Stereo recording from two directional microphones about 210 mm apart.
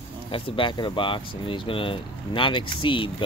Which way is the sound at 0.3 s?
25° left (ahead or behind).